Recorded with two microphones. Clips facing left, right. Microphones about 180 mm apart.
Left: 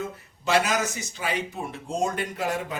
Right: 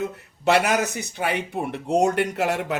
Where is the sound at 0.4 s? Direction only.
65° right (ahead or behind).